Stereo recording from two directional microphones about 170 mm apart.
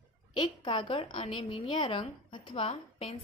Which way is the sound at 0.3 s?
25° left (ahead or behind).